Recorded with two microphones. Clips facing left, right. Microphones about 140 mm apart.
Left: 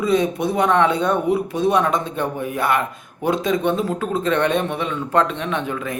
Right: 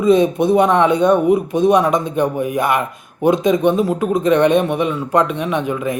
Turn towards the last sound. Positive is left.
turn(degrees=-15)  # may be behind; listen again after turning